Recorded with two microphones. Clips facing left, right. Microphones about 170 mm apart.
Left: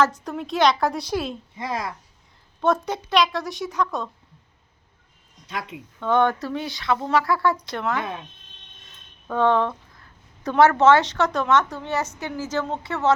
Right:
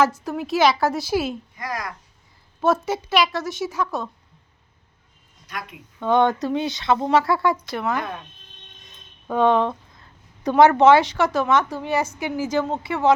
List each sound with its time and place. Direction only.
0.0 s a woman's voice: 5° right (ahead or behind)
1.5 s a woman's voice: 25° left (ahead or behind)
2.6 s a woman's voice: 5° right (ahead or behind)
5.5 s a woman's voice: 25° left (ahead or behind)
6.0 s speech: 15° right (ahead or behind)
7.7 s a woman's voice: 5° right (ahead or behind)
9.2 s a sound: 15° right (ahead or behind)
10.5 s a woman's voice: 15° right (ahead or behind)